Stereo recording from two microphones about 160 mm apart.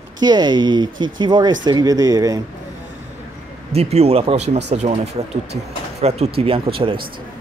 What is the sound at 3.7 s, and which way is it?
Speech, 40° right (ahead or behind).